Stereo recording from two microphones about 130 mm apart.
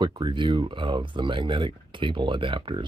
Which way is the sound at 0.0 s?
35° right (ahead or behind).